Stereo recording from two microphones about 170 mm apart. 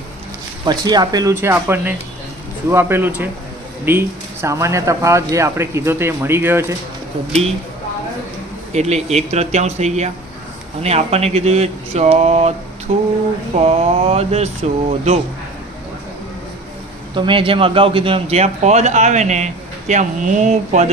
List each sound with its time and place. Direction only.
0.6 s speech: 25° right (ahead or behind)
8.7 s a man's voice: 40° right (ahead or behind)
17.2 s a man's voice: 30° right (ahead or behind)